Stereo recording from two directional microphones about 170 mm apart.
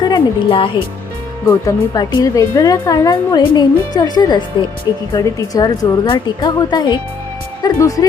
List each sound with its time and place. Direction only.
0.0 s speech: 25° left (ahead or behind)